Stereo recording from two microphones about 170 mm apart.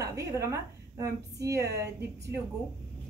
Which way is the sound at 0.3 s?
15° right (ahead or behind).